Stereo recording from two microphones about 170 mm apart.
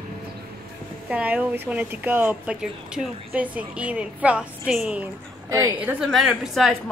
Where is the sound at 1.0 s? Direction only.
10° right (ahead or behind).